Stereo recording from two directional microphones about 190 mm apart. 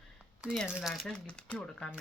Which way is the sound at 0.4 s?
Centre (ahead or behind).